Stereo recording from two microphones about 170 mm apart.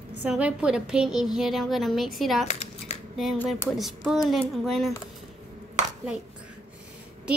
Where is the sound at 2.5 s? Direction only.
45° left (ahead or behind).